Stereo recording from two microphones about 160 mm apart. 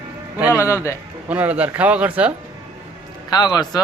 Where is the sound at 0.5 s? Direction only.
15° left (ahead or behind).